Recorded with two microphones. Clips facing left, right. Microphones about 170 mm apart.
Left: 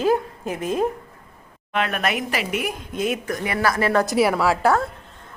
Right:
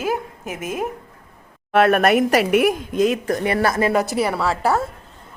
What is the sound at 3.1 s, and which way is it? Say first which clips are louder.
Speech: right 5 dB; 35° right (ahead or behind).